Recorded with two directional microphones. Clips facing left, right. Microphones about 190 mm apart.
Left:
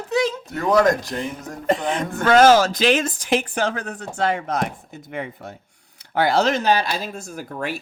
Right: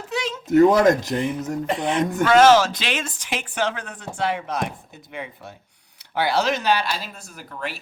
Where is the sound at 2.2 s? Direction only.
40° left (ahead or behind).